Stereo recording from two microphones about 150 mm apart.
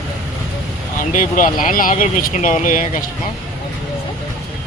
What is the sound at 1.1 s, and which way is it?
Speech, 65° left (ahead or behind).